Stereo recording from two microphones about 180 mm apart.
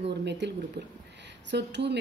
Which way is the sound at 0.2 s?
75° right (ahead or behind).